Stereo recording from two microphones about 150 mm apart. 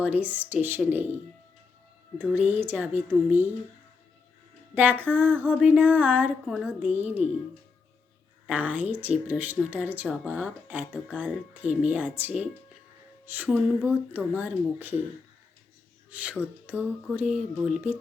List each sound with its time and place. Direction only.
0.0 s speech: 10° right (ahead or behind)
2.3 s speech: 10° right (ahead or behind)
4.7 s speech: 10° right (ahead or behind)
6.4 s speech: centre (ahead or behind)
6.7 s speech: 10° right (ahead or behind)
8.4 s speech: 10° right (ahead or behind)
16.0 s speech: 10° right (ahead or behind)